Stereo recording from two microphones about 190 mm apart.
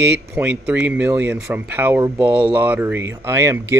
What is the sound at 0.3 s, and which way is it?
Speech, 10° right (ahead or behind).